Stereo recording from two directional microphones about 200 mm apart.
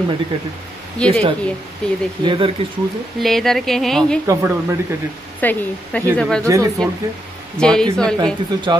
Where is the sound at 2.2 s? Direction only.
25° right (ahead or behind).